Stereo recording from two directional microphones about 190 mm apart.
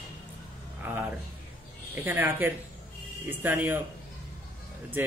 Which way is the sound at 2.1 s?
10° right (ahead or behind).